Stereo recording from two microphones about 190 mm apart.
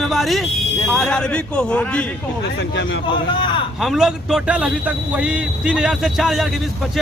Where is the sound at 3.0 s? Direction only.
25° left (ahead or behind).